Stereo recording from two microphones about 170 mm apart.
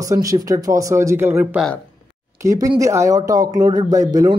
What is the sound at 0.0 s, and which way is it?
Speech, 20° right (ahead or behind).